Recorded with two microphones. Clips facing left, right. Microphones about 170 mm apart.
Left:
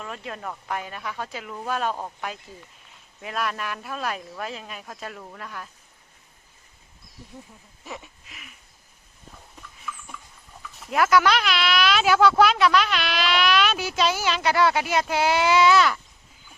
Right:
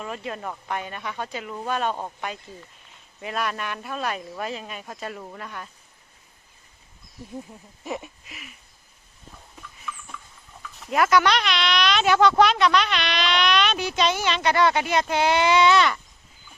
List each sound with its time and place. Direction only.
0.0 s speech: centre (ahead or behind)
7.9 s speech: 15° right (ahead or behind)
9.6 s a sound: centre (ahead or behind)
10.6 s speech: centre (ahead or behind)